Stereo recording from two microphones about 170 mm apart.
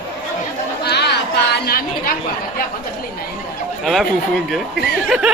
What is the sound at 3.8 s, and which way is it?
Speech, centre (ahead or behind).